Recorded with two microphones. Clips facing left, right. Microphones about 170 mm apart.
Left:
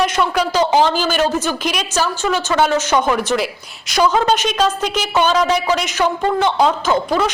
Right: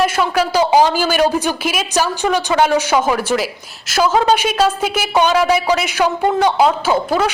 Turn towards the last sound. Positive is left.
turn(degrees=-5)  # may be behind; listen again after turning